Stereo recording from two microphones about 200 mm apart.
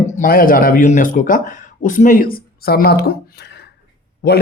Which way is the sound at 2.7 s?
50° left (ahead or behind).